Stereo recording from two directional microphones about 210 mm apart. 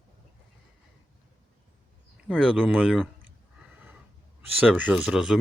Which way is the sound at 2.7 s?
5° right (ahead or behind).